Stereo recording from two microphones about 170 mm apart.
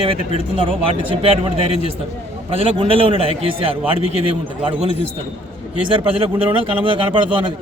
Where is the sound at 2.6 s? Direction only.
35° right (ahead or behind).